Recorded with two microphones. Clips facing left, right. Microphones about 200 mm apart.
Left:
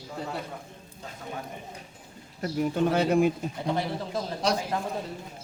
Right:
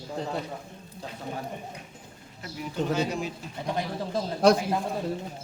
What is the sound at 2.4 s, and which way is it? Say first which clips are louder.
Speech: left 6 dB; 55° left (ahead or behind).